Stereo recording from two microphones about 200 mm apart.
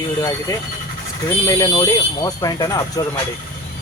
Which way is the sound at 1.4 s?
20° left (ahead or behind).